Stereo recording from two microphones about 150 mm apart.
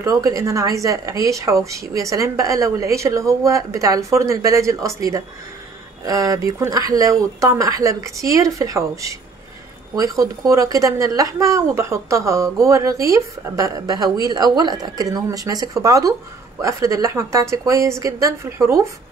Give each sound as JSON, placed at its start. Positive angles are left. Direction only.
{"t": 0.0, "sound": "a woman's voice", "side_deg": -25}